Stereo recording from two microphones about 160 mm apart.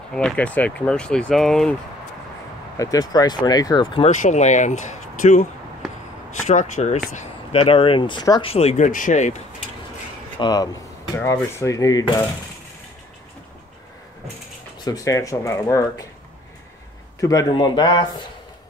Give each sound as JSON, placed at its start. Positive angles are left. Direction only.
{"t": 0.1, "sound": "speech", "side_deg": 5}
{"t": 2.8, "sound": "speech", "side_deg": 25}
{"t": 4.0, "sound": "speech", "side_deg": 50}
{"t": 6.4, "sound": "speech", "side_deg": 50}
{"t": 7.5, "sound": "speech", "side_deg": 35}
{"t": 10.4, "sound": "speech", "side_deg": 25}
{"t": 14.9, "sound": "speech", "side_deg": 20}
{"t": 17.2, "sound": "speech", "side_deg": 20}